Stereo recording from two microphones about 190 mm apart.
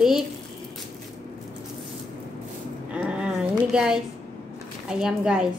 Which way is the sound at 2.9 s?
5° right (ahead or behind).